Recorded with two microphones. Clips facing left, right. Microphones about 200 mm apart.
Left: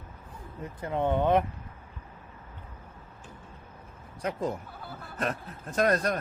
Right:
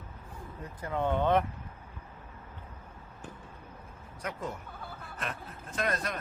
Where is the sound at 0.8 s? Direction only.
20° left (ahead or behind).